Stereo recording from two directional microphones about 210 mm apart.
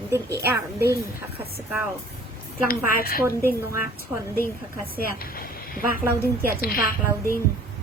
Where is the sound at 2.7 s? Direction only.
45° left (ahead or behind).